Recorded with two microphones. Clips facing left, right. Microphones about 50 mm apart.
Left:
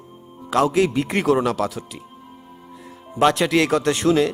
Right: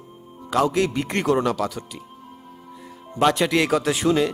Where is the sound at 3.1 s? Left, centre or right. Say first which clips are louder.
Left 2 dB; centre.